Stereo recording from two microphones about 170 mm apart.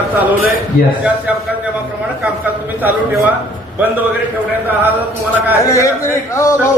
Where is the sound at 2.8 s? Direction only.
10° right (ahead or behind).